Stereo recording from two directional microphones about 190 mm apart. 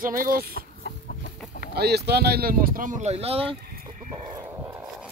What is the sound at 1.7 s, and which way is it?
Speech, 60° right (ahead or behind).